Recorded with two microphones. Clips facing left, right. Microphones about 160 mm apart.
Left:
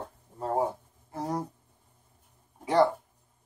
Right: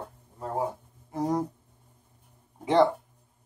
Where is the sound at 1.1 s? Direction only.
20° right (ahead or behind).